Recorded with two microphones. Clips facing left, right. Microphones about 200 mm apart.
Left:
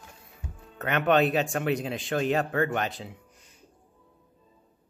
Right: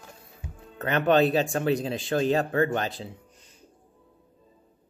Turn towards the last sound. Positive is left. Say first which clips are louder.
# right 1 dB
turn(degrees=-30)  # may be behind; listen again after turning